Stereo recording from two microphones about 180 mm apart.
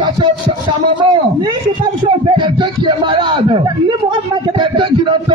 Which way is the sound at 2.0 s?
25° right (ahead or behind).